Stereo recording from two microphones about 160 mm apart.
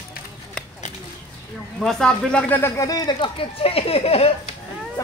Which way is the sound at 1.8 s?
5° left (ahead or behind).